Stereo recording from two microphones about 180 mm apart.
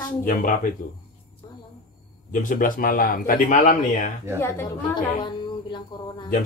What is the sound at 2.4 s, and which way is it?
Speech, 45° left (ahead or behind).